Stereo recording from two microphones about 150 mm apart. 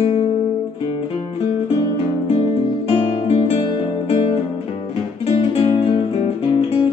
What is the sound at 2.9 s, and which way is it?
Guitar, 40° left (ahead or behind).